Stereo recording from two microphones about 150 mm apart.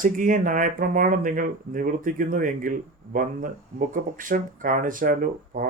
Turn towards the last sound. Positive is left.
turn(degrees=-65)  # may be behind; listen again after turning